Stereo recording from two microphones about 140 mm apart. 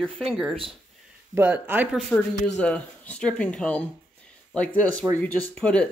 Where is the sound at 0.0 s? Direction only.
Centre (ahead or behind).